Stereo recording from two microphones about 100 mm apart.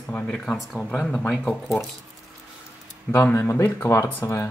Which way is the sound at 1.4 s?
15° left (ahead or behind).